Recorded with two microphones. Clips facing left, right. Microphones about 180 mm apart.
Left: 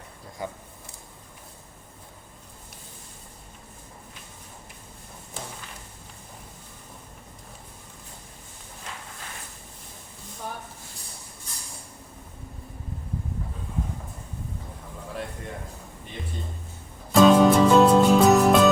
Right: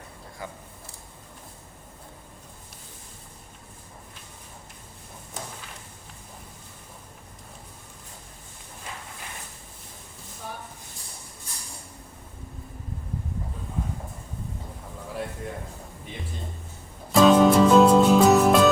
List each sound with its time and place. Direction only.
0.4 s speech: 20° left (ahead or behind)
17.1 s music: centre (ahead or behind)